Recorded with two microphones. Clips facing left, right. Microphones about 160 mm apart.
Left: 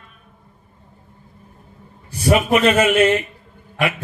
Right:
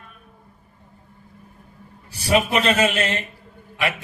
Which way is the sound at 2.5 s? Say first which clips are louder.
Left 5 dB; 35° right (ahead or behind).